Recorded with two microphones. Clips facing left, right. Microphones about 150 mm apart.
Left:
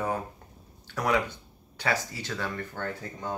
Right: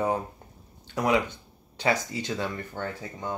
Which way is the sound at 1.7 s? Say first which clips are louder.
Right 4 dB; 20° right (ahead or behind).